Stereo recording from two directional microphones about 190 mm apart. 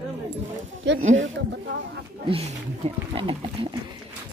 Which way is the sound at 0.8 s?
70° right (ahead or behind).